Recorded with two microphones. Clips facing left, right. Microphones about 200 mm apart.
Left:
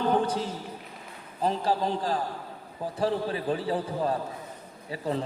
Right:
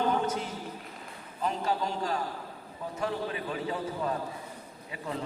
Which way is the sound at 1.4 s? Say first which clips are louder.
Left 4 dB; 35° left (ahead or behind).